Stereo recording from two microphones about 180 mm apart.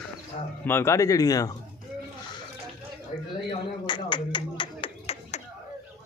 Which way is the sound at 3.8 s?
25° left (ahead or behind).